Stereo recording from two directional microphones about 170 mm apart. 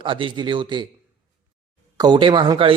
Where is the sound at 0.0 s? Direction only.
30° right (ahead or behind).